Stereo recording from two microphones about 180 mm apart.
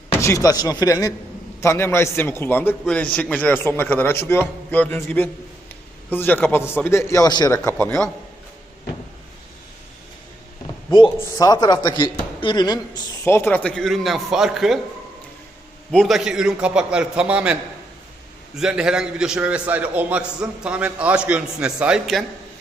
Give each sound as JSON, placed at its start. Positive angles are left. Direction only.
{"t": 0.1, "sound": "a man's voice", "side_deg": 15}
{"t": 7.8, "sound": "a man's voice", "side_deg": 5}
{"t": 10.9, "sound": "speech", "side_deg": 25}
{"t": 15.9, "sound": "a man's voice", "side_deg": 0}